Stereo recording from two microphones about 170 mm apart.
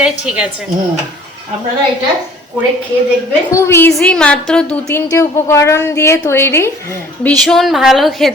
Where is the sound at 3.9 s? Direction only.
5° left (ahead or behind).